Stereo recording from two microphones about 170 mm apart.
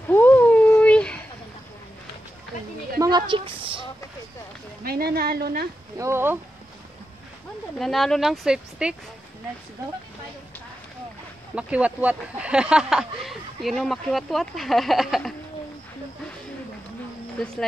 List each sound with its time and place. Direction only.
0.1 s a sound: 10° left (ahead or behind)
3.0 s speech: 25° right (ahead or behind)
4.8 s speech: 65° right (ahead or behind)
5.9 s speech: 15° right (ahead or behind)
7.8 s speech: centre (ahead or behind)
11.5 s speech: 5° right (ahead or behind)